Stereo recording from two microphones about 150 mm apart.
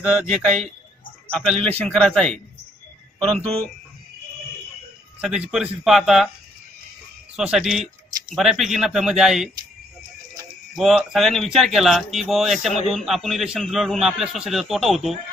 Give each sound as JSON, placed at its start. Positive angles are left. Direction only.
{"t": 0.0, "sound": "a man's voice", "side_deg": -5}
{"t": 1.3, "sound": "speech", "side_deg": 5}
{"t": 5.2, "sound": "a man's voice", "side_deg": -5}
{"t": 7.3, "sound": "a man's voice", "side_deg": -5}
{"t": 10.7, "sound": "a man's voice", "side_deg": 0}